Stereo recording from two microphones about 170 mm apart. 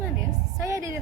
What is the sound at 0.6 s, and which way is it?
Speech, 15° right (ahead or behind).